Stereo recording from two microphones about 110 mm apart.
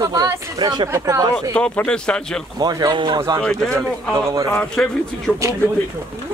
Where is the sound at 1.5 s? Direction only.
10° left (ahead or behind).